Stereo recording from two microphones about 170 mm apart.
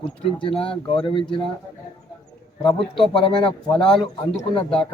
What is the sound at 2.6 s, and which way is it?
Speech, 30° left (ahead or behind).